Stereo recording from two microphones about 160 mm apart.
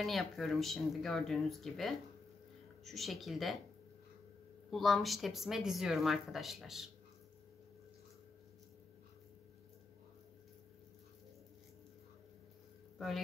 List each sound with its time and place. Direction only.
0.0 s speech: centre (ahead or behind)
4.6 s speech: centre (ahead or behind)